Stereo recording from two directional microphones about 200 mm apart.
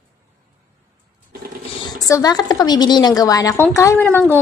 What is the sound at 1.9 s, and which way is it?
A woman's voice, 15° left (ahead or behind).